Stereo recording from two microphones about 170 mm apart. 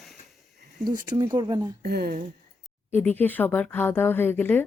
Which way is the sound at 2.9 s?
10° left (ahead or behind).